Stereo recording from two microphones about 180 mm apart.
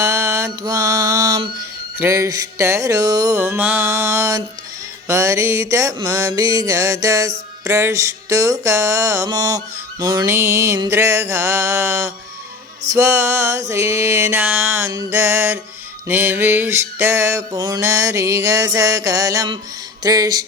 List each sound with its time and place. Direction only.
0.0 s mantra: 15° right (ahead or behind)
2.0 s music: 15° right (ahead or behind)
20.0 s speech: 20° right (ahead or behind)